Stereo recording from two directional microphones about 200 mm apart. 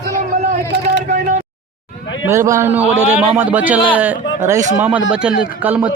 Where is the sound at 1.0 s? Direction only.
40° right (ahead or behind).